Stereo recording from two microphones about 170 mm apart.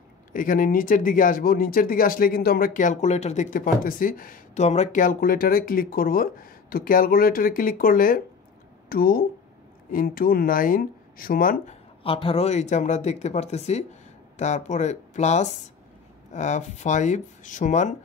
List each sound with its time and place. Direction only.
0.3 s speech: 55° left (ahead or behind)
12.0 s speech: 35° left (ahead or behind)